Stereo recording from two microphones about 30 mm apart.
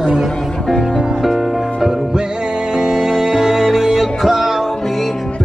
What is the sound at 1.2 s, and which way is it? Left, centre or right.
Music, centre.